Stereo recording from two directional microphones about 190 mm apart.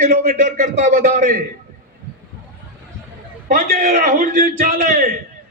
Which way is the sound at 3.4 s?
50° right (ahead or behind).